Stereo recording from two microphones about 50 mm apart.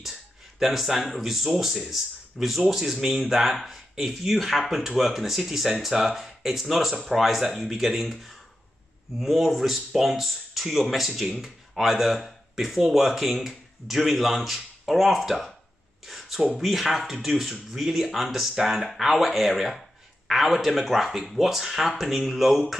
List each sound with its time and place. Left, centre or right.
0.6 s a man's voice: centre
16.1 s a sound: centre
16.5 s speech: centre